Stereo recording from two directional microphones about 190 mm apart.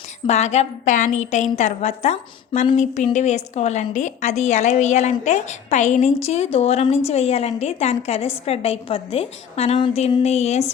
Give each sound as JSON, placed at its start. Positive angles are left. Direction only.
{"t": 0.3, "sound": "a woman's voice", "side_deg": 35}